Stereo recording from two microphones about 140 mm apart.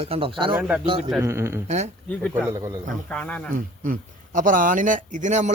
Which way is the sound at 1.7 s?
55° right (ahead or behind).